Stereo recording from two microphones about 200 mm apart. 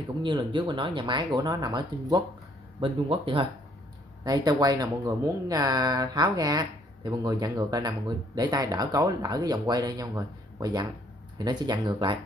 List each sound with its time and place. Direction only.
0.2 s speech: 25° right (ahead or behind)